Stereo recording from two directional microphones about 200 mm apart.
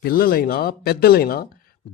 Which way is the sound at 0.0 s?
50° left (ahead or behind).